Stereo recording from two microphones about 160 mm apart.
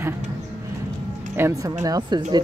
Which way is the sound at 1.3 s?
20° right (ahead or behind).